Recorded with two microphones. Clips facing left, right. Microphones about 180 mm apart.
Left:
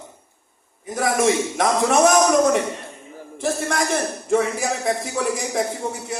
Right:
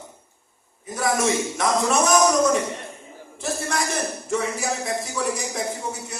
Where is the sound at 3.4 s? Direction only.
55° left (ahead or behind).